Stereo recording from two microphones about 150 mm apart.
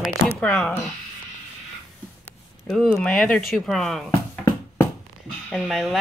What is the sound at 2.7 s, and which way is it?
Speech, 5° left (ahead or behind).